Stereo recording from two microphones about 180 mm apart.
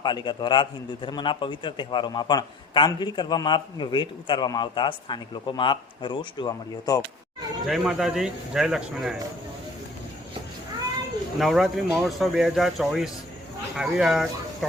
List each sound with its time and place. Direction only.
0.0 s a man's voice: 25° left (ahead or behind)
7.7 s speech: 5° right (ahead or behind)
11.3 s speech: centre (ahead or behind)